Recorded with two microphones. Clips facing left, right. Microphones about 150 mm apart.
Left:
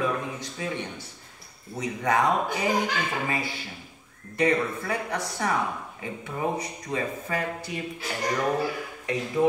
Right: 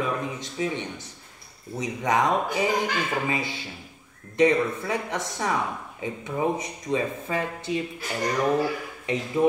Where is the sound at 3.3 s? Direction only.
20° right (ahead or behind).